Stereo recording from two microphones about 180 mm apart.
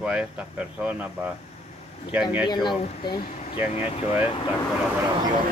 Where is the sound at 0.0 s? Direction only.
5° right (ahead or behind).